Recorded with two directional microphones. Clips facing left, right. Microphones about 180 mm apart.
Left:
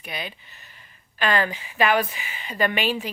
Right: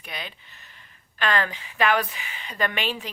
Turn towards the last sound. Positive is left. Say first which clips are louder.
# left 4 dB
turn(degrees=5)  # may be behind; listen again after turning